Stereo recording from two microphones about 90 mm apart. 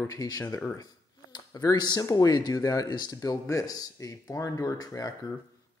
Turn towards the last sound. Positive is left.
turn(degrees=40)  # may be behind; listen again after turning